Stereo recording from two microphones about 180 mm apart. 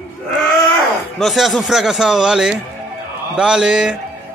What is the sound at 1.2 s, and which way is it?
A man's voice, centre (ahead or behind).